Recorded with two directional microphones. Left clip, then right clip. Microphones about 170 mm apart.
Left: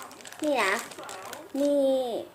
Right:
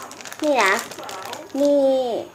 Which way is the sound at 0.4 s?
10° left (ahead or behind).